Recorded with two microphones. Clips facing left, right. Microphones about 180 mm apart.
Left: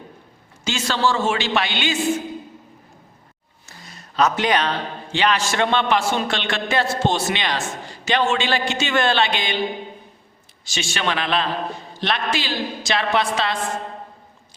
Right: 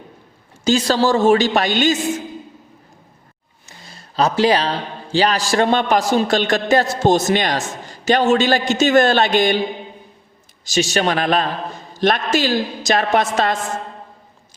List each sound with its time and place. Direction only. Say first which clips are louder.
0.6 s a man's voice: right 6 dB; 40° right (ahead or behind)
3.8 s a man's voice: right 1 dB; 30° right (ahead or behind)
10.7 s a woman's voice: right 7 dB; 40° right (ahead or behind)